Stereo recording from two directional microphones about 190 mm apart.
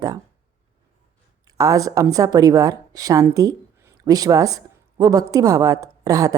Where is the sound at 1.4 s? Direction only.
20° right (ahead or behind).